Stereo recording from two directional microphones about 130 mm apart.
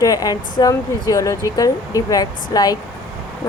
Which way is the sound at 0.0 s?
30° left (ahead or behind).